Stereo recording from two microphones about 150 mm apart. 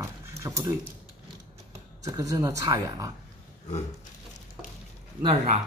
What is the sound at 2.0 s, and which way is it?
Speech, 20° right (ahead or behind).